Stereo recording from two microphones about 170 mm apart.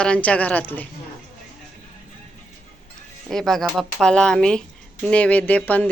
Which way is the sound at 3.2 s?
Centre (ahead or behind).